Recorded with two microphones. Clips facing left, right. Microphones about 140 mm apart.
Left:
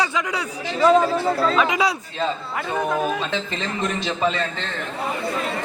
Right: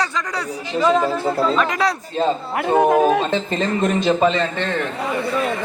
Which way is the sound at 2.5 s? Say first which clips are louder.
Right 11 dB; 50° right (ahead or behind).